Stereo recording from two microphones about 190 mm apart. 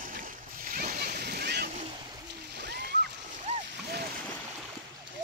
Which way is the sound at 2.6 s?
60° right (ahead or behind).